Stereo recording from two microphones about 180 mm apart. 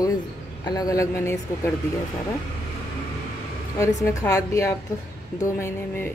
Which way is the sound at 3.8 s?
15° left (ahead or behind).